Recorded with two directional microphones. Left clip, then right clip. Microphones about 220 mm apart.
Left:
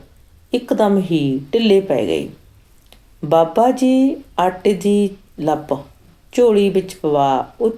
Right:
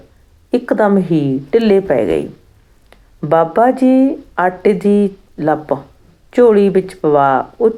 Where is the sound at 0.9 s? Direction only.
40° right (ahead or behind).